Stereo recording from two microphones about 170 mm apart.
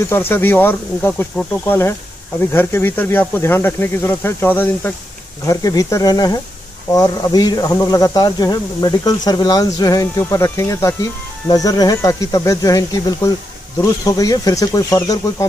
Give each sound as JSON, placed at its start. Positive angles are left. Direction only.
{"t": 0.1, "sound": "speech", "side_deg": 10}
{"t": 14.0, "sound": "speech", "side_deg": 20}